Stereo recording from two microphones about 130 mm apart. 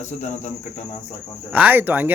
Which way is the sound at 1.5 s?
15° right (ahead or behind).